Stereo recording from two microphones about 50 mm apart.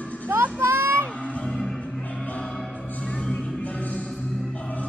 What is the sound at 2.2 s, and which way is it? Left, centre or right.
Music, left.